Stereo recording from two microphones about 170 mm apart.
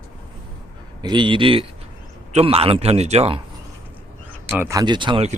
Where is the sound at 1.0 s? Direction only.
30° right (ahead or behind).